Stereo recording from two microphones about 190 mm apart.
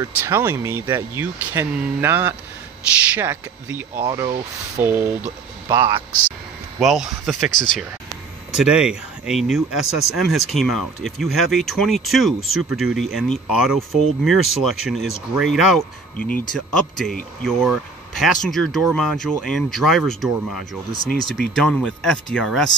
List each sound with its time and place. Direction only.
0.0 s a man's voice: 10° right (ahead or behind)
4.8 s speech: 10° right (ahead or behind)
5.7 s a man's voice: 20° right (ahead or behind)
6.8 s speech: centre (ahead or behind)